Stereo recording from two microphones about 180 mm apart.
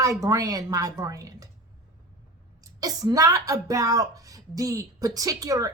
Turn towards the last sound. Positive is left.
turn(degrees=-20)  # may be behind; listen again after turning